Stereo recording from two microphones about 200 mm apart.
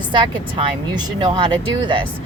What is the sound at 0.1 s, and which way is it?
Speech, 25° right (ahead or behind).